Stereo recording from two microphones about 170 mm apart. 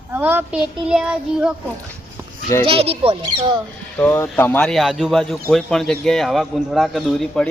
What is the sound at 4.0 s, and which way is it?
A man's voice, 10° left (ahead or behind).